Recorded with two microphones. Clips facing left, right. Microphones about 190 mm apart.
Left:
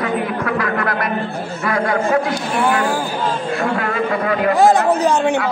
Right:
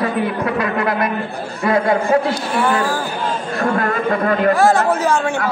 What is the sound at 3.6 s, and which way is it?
Speech, 45° right (ahead or behind).